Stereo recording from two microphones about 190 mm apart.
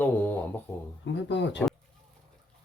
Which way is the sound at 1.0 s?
70° left (ahead or behind).